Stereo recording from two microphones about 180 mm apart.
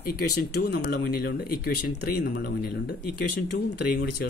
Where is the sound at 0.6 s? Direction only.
60° left (ahead or behind).